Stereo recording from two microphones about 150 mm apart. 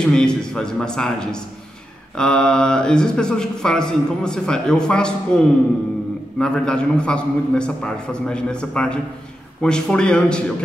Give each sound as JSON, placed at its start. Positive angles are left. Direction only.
{"t": 0.0, "sound": "a man's voice", "side_deg": 5}